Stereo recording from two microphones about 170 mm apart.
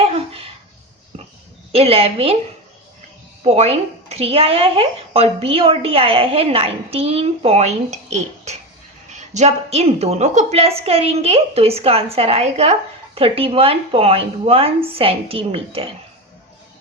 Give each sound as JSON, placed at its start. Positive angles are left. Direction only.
{"t": 1.7, "sound": "speech", "side_deg": -35}
{"t": 3.4, "sound": "speech", "side_deg": -35}